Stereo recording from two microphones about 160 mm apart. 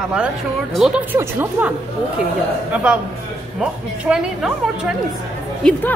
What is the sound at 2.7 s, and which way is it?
Speech, 5° right (ahead or behind).